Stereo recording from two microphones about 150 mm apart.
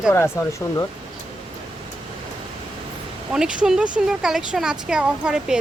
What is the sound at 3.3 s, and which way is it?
Speech, 5° right (ahead or behind).